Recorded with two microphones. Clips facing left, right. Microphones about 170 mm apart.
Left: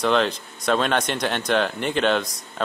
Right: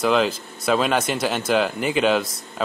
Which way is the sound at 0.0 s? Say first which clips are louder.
Right 1 dB; 5° right (ahead or behind).